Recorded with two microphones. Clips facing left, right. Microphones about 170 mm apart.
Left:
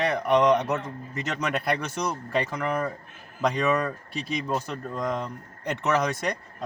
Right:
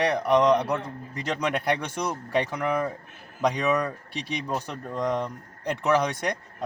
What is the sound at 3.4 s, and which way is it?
Speech, 15° right (ahead or behind).